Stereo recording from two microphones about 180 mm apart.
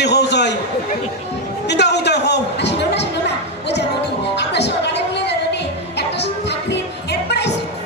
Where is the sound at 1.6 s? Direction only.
70° left (ahead or behind).